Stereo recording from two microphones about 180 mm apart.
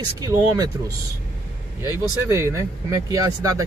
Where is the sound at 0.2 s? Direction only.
20° right (ahead or behind).